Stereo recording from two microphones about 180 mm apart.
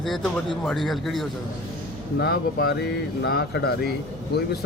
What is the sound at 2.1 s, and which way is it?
Speech, 60° left (ahead or behind).